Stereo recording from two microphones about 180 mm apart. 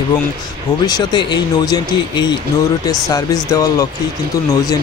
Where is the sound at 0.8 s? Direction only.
20° left (ahead or behind).